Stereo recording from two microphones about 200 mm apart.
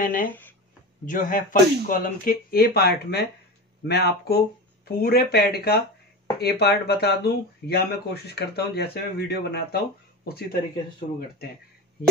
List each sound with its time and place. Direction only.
0.0 s speech: 45° left (ahead or behind)
0.3 s a sound: 10° left (ahead or behind)
1.0 s speech: 40° left (ahead or behind)